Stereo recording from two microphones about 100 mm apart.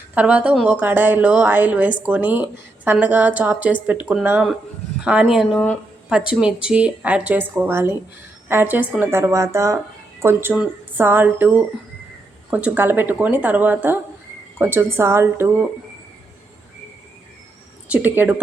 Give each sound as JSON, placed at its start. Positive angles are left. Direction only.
{"t": 0.1, "sound": "a woman's voice", "side_deg": -15}
{"t": 17.9, "sound": "speech", "side_deg": -20}